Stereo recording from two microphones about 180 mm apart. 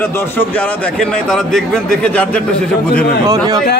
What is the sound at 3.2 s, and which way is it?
Speech, 15° right (ahead or behind).